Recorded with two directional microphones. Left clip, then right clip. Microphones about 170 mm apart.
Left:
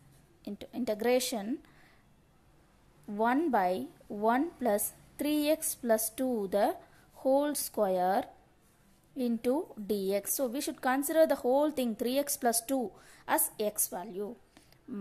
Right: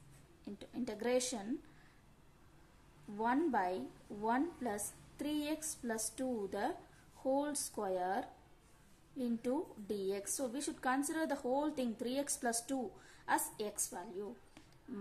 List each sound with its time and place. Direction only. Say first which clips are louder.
0.4 s speech: left 6 dB; 40° left (ahead or behind)
3.2 s speech: left 7 dB; 40° left (ahead or behind)